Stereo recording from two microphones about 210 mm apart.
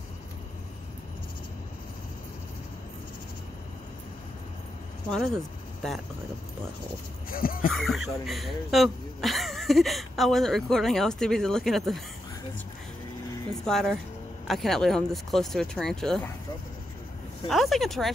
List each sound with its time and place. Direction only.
7.2 s speech: 45° left (ahead or behind)
7.7 s speech: centre (ahead or behind)
13.7 s speech: centre (ahead or behind)
17.5 s speech: centre (ahead or behind)